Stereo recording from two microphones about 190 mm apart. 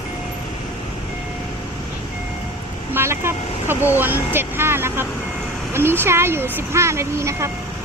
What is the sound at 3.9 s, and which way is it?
Speech, 10° right (ahead or behind).